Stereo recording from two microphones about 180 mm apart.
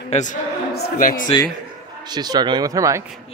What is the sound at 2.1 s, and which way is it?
Speech, 25° right (ahead or behind).